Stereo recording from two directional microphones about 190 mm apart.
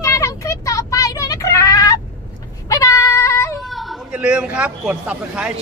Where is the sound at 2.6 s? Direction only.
15° left (ahead or behind).